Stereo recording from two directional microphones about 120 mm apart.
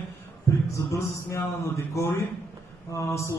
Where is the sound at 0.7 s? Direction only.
25° left (ahead or behind).